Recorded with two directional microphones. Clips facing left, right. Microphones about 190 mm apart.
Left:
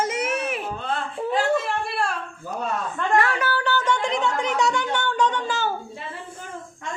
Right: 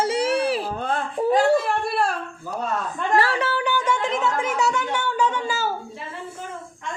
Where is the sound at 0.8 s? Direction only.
45° right (ahead or behind).